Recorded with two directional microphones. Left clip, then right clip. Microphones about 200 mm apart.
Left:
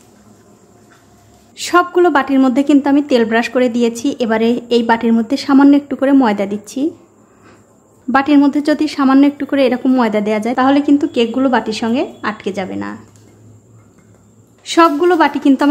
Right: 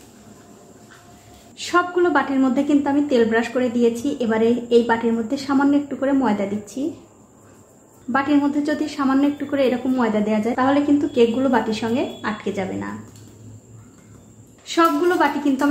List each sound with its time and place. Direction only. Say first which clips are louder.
1.6 s a woman's voice: left 7 dB; 40° left (ahead or behind)
8.1 s a woman's voice: left 7 dB; 40° left (ahead or behind)
14.6 s a woman's voice: left 7 dB; 45° left (ahead or behind)